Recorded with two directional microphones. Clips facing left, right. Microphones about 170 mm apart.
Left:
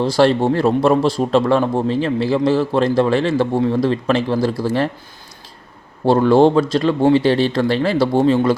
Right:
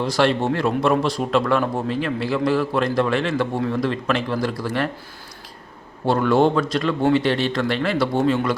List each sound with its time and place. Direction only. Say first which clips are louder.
0.0 s speech: left 5 dB; 30° left (ahead or behind)
6.1 s speech: left 5 dB; 30° left (ahead or behind)